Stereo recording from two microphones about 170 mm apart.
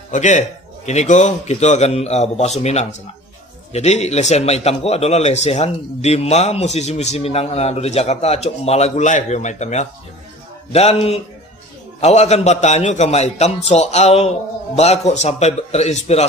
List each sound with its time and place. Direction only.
0.1 s a man's voice: 45° left (ahead or behind)